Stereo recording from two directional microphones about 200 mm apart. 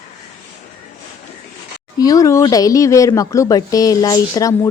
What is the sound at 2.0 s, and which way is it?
Speech, 15° left (ahead or behind).